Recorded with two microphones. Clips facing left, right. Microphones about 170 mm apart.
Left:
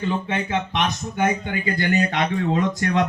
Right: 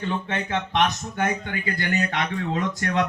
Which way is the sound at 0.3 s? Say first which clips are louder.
Left 3 dB; 15° left (ahead or behind).